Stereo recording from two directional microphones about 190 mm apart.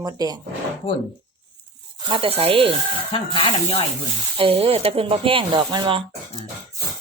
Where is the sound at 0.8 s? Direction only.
30° left (ahead or behind).